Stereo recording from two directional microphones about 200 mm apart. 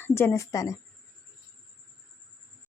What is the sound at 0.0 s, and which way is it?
Speech, 10° left (ahead or behind).